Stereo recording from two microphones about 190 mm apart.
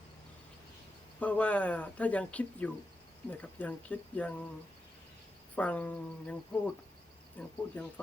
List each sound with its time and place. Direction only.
1.2 s speech: 5° left (ahead or behind)
5.5 s speech: 5° left (ahead or behind)